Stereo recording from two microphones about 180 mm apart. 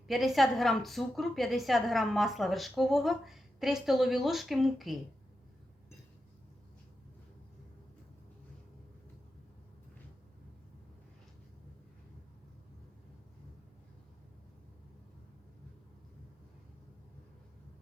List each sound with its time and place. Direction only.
0.1 s a woman's voice: centre (ahead or behind)